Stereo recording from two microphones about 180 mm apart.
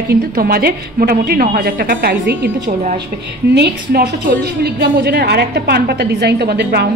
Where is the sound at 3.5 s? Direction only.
65° right (ahead or behind).